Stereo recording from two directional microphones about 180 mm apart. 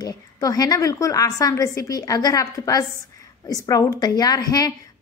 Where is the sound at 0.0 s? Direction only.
20° left (ahead or behind).